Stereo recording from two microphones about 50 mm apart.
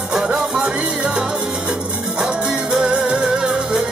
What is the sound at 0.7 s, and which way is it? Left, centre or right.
Music, centre.